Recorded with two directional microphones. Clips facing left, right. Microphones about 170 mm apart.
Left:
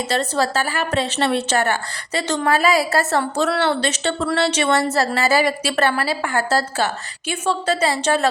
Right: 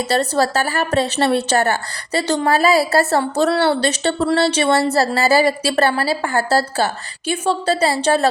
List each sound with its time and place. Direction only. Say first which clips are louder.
0.1 s a woman's voice: right 3 dB; 40° right (ahead or behind)